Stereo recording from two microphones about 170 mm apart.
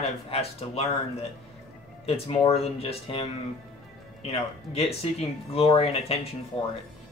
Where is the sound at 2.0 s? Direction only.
35° left (ahead or behind).